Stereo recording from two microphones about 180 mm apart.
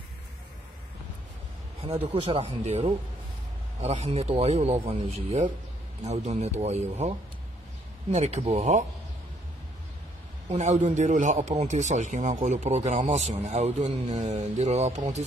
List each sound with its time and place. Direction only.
2.0 s speech: 35° right (ahead or behind)
10.5 s speech: 40° right (ahead or behind)